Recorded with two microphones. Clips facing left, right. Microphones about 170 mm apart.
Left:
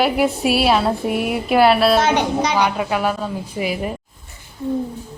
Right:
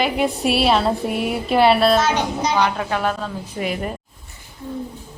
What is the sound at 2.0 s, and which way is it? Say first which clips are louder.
Speech: left 3 dB; 65° left (ahead or behind).